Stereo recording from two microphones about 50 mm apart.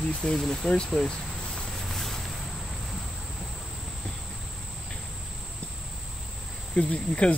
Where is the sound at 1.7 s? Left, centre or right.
Centre.